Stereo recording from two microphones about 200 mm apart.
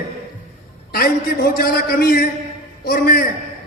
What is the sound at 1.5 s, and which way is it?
A man's voice, 50° left (ahead or behind).